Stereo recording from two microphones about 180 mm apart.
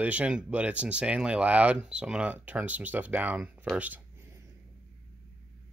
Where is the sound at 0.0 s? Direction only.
5° right (ahead or behind).